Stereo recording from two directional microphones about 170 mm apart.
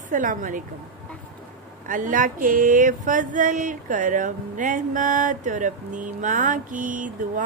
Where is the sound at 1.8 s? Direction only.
50° right (ahead or behind).